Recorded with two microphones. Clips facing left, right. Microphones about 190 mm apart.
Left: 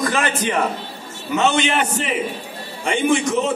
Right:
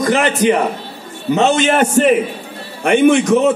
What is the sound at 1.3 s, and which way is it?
Speech, 40° right (ahead or behind).